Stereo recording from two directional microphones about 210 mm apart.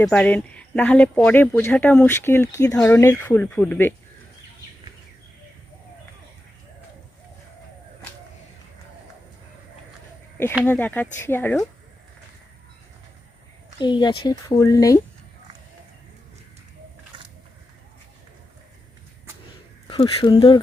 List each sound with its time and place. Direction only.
0.0 s speech: 5° left (ahead or behind)
10.6 s speech: 10° left (ahead or behind)
13.7 s speech: 20° left (ahead or behind)
19.9 s speech: 25° left (ahead or behind)